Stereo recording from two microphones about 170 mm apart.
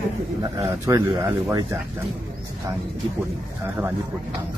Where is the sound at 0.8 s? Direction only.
15° right (ahead or behind).